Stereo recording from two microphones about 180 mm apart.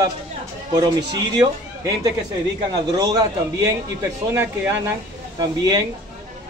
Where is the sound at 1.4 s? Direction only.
20° right (ahead or behind).